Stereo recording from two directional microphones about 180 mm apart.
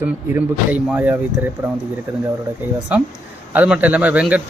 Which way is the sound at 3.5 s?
10° right (ahead or behind).